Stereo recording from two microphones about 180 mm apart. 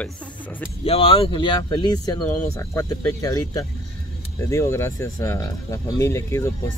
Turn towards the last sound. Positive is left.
turn(degrees=15)  # may be behind; listen again after turning